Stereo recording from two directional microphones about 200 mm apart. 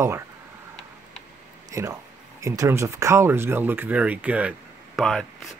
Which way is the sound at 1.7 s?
15° right (ahead or behind).